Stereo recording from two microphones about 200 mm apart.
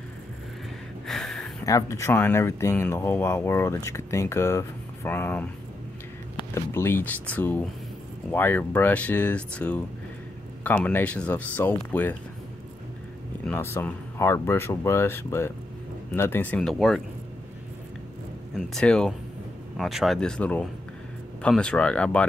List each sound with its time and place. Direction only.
1.0 s a sound: centre (ahead or behind)
1.7 s speech: 15° left (ahead or behind)
13.5 s speech: 10° left (ahead or behind)
18.6 s speech: centre (ahead or behind)